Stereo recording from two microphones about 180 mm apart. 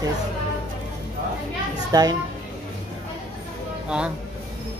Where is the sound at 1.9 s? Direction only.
20° right (ahead or behind).